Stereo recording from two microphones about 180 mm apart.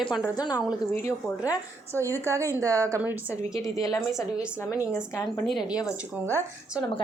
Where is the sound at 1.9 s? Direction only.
15° right (ahead or behind).